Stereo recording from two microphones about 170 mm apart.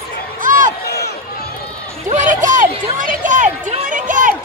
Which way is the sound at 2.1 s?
50° right (ahead or behind).